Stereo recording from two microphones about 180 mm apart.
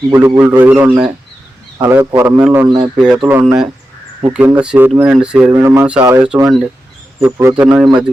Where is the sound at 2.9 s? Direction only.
5° right (ahead or behind).